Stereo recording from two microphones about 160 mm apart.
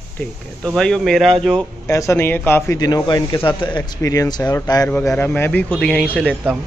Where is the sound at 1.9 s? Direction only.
20° left (ahead or behind).